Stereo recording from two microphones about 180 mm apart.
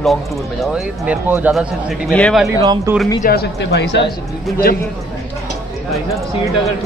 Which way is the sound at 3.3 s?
65° left (ahead or behind).